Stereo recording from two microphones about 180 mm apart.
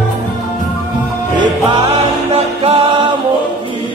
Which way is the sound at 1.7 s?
30° right (ahead or behind).